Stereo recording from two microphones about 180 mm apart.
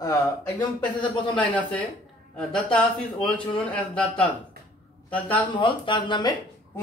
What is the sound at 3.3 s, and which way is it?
Speech, 25° left (ahead or behind).